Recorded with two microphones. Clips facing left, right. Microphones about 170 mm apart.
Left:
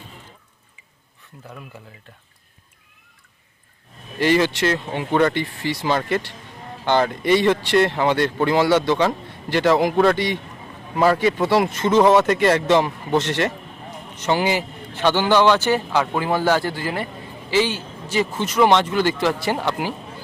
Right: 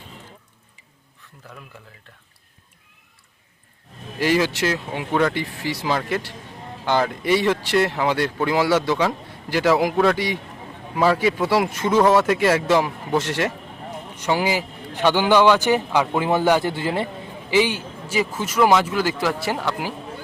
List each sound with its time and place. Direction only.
4.2 s speech: 5° right (ahead or behind)